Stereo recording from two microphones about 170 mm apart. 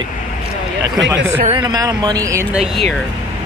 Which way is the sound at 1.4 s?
30° right (ahead or behind).